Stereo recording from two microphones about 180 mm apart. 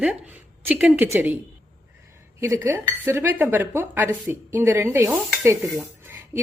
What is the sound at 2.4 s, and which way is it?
A woman's voice, 15° right (ahead or behind).